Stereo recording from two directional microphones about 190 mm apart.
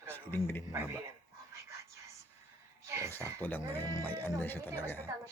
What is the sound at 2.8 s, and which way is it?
Speech, 15° right (ahead or behind).